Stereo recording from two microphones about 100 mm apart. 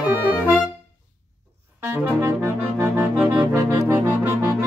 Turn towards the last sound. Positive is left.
turn(degrees=-25)  # may be behind; listen again after turning